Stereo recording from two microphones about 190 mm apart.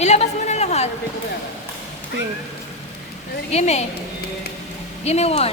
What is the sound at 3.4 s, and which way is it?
Speech, 35° left (ahead or behind).